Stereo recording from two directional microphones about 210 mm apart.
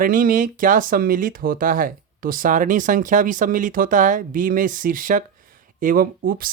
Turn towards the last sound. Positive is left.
turn(degrees=-40)  # may be behind; listen again after turning